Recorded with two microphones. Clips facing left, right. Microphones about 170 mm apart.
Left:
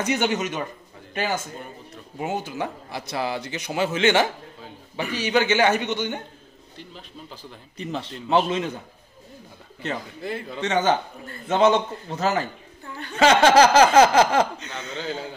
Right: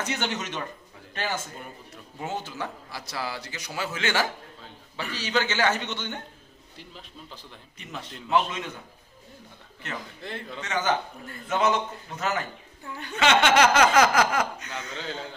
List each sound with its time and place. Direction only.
0.0 s a man's voice: 15° left (ahead or behind)
6.8 s a man's voice: centre (ahead or behind)
7.7 s a man's voice: 30° left (ahead or behind)
10.2 s a man's voice: 5° left (ahead or behind)
10.6 s a man's voice: 30° left (ahead or behind)
15.0 s a man's voice: 5° left (ahead or behind)